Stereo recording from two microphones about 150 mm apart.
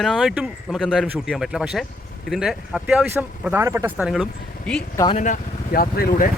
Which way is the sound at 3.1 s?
15° right (ahead or behind).